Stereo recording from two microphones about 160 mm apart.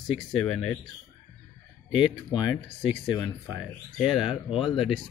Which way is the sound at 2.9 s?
25° left (ahead or behind).